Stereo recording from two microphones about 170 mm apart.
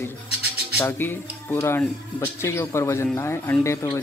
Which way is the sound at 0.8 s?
15° left (ahead or behind).